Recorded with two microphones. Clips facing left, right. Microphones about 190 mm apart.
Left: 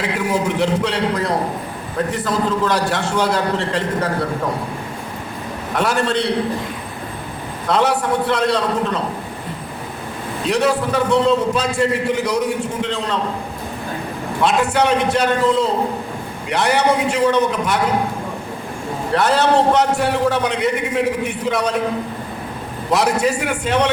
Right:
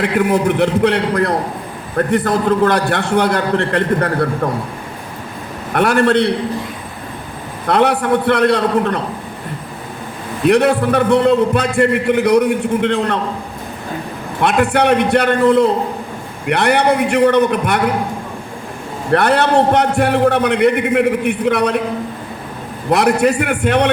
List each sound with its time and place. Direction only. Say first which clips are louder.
0.0 s a man's voice: right 5 dB; 55° right (ahead or behind)
5.7 s a man's voice: right 6 dB; 60° right (ahead or behind)
7.7 s a man's voice: right 4 dB; 60° right (ahead or behind)
10.4 s a man's voice: right 6 dB; 60° right (ahead or behind)
14.4 s a man's voice: right 3 dB; 60° right (ahead or behind)
19.1 s a man's voice: right 3 dB; 60° right (ahead or behind)
22.9 s a man's voice: right 4 dB; 60° right (ahead or behind)